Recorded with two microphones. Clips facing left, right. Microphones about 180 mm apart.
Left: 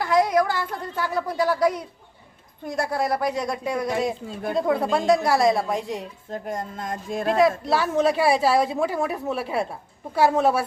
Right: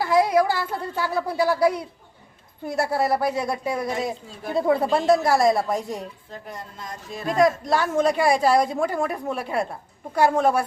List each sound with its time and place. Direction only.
0.0 s a woman's voice: 5° right (ahead or behind)
6.3 s music: 45° left (ahead or behind)
7.7 s a woman's voice: 5° left (ahead or behind)